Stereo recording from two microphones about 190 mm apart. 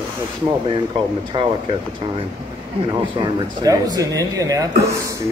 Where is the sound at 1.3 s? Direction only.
25° right (ahead or behind).